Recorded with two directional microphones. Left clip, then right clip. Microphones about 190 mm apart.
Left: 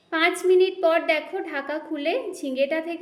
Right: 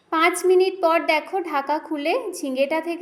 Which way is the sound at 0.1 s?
20° right (ahead or behind).